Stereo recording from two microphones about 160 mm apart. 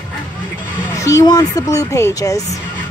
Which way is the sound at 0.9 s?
20° left (ahead or behind).